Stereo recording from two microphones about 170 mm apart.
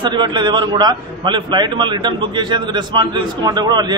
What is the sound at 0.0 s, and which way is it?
A man's voice, 25° right (ahead or behind).